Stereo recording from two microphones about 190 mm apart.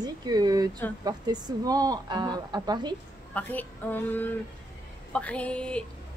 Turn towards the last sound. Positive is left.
turn(degrees=5)  # may be behind; listen again after turning